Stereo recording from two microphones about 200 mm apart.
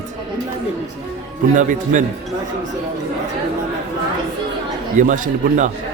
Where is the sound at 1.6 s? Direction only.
40° right (ahead or behind).